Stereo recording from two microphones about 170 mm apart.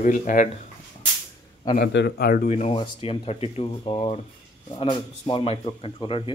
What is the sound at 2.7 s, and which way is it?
Speech, 30° left (ahead or behind).